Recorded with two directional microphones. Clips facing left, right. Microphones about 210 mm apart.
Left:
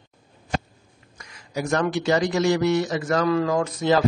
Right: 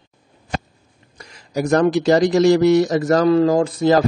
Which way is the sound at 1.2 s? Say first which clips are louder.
Right 6 dB; 35° right (ahead or behind).